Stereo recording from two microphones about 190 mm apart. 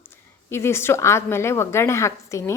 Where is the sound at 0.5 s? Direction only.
15° left (ahead or behind).